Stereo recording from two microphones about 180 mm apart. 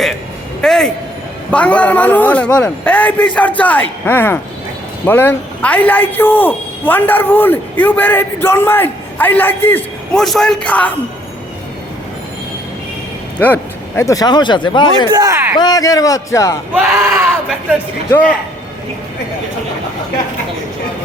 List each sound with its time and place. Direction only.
0.6 s a man's voice: 5° left (ahead or behind)
13.4 s speech: 10° left (ahead or behind)
15.1 s speech: 20° right (ahead or behind)
15.5 s speech: 20° left (ahead or behind)
18.1 s a man's voice: 5° left (ahead or behind)